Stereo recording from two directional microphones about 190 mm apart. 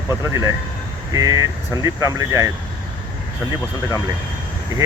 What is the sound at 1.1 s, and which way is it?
Speech, 15° right (ahead or behind).